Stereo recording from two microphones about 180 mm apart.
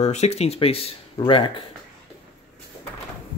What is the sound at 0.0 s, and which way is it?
Speech, 40° left (ahead or behind).